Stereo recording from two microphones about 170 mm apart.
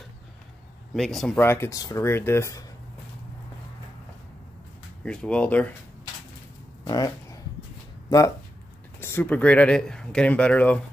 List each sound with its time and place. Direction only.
0.9 s speech: centre (ahead or behind)
1.4 s speech: 15° left (ahead or behind)
5.0 s speech: 5° left (ahead or behind)
6.8 s a sound: 20° left (ahead or behind)
8.1 s speech: 20° left (ahead or behind)
9.0 s speech: 10° left (ahead or behind)